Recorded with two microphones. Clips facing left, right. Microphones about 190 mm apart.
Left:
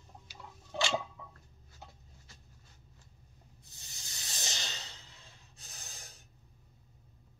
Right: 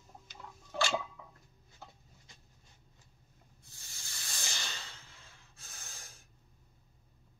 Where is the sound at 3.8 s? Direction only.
20° left (ahead or behind).